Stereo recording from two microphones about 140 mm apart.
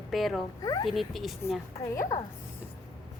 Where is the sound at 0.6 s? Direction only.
25° left (ahead or behind).